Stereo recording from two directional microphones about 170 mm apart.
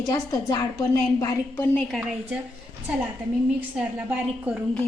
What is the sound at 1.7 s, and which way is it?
Speech, centre (ahead or behind).